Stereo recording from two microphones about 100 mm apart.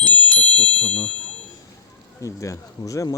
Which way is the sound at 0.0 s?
15° left (ahead or behind).